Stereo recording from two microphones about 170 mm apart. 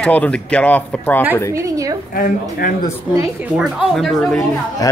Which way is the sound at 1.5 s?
20° right (ahead or behind).